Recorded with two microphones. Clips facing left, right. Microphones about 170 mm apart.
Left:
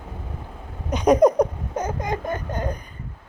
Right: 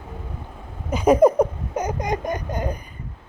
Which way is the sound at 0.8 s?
5° right (ahead or behind).